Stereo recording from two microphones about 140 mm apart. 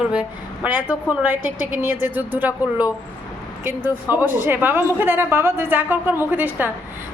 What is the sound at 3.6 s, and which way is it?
A woman's voice, 15° right (ahead or behind).